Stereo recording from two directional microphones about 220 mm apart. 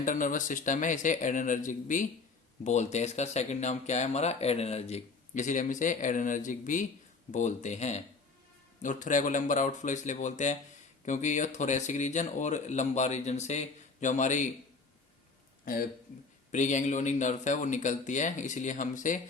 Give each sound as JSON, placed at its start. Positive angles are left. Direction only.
{"t": 0.0, "sound": "speech", "side_deg": 35}
{"t": 15.6, "sound": "a man's voice", "side_deg": 40}